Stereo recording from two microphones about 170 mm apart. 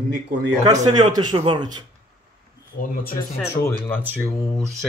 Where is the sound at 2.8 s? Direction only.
55° left (ahead or behind).